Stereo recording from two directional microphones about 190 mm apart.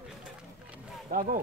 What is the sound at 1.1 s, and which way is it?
Speech, 45° right (ahead or behind).